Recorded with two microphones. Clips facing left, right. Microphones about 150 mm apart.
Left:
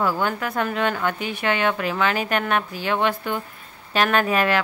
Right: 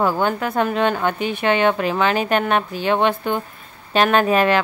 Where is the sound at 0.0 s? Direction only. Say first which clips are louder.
Right 4 dB; 25° right (ahead or behind).